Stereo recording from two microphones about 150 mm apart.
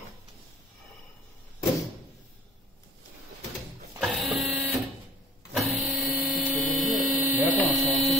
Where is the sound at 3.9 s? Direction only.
5° right (ahead or behind).